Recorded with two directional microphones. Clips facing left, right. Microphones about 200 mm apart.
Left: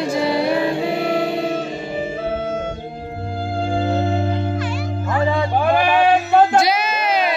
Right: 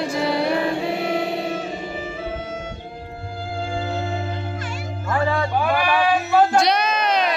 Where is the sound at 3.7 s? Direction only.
45° left (ahead or behind).